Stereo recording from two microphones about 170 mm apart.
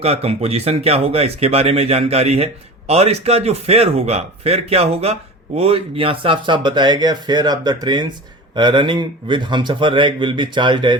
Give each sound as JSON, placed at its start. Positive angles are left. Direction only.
{"t": 0.0, "sound": "speech", "side_deg": -35}